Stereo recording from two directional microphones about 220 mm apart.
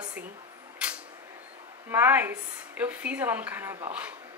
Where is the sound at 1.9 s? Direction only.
10° right (ahead or behind).